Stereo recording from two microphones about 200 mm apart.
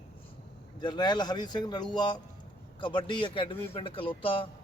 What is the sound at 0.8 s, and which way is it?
Speech, 20° left (ahead or behind).